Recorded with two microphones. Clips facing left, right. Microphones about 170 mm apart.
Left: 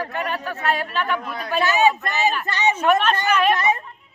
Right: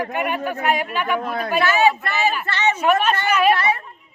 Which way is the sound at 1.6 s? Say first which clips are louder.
Even; 15° left (ahead or behind).